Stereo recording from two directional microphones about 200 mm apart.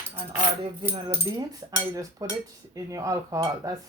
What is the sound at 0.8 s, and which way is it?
Cutlery, 25° right (ahead or behind).